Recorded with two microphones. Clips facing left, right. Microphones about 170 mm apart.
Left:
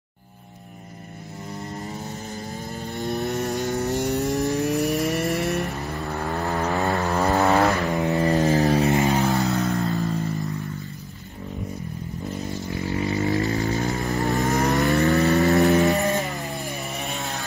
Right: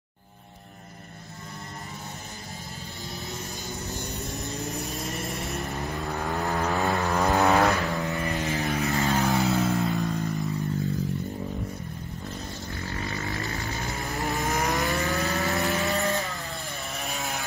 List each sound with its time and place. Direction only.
3.1 s vehicle: 65° left (ahead or behind)
5.9 s vehicle: centre (ahead or behind)
7.9 s vehicle: 20° left (ahead or behind)
8.2 s vehicle: 35° left (ahead or behind)
9.1 s vehicle: centre (ahead or behind)
9.8 s a sound: centre (ahead or behind)
12.7 s a sound: 20° left (ahead or behind)
13.4 s music: 35° left (ahead or behind)
14.3 s vehicle: centre (ahead or behind)
15.1 s vehicle: 20° left (ahead or behind)
15.6 s a sound: 20° left (ahead or behind)